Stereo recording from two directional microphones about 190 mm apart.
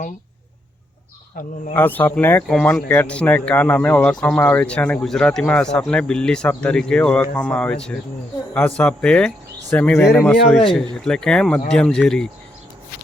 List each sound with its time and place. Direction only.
1.4 s speech: 45° left (ahead or behind)
1.7 s speech: 10° left (ahead or behind)